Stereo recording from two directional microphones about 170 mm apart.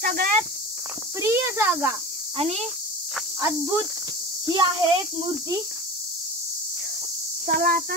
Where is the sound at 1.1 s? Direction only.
15° right (ahead or behind).